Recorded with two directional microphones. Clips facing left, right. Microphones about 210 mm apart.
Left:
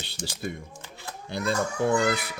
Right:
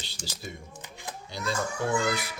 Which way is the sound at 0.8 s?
15° right (ahead or behind).